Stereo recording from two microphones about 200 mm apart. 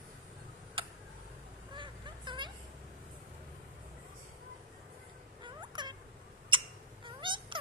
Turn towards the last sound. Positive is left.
turn(degrees=-25)  # may be behind; listen again after turning